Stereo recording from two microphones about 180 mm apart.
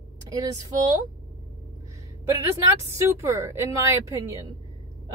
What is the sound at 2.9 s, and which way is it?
A woman's voice, 15° right (ahead or behind).